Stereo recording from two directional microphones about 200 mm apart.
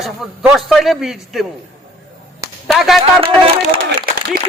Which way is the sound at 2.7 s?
Centre (ahead or behind).